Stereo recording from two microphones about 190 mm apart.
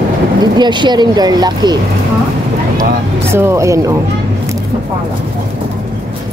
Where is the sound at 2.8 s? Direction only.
15° right (ahead or behind).